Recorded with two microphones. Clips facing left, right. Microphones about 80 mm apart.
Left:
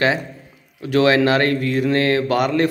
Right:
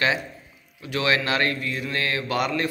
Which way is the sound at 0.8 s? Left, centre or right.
Left.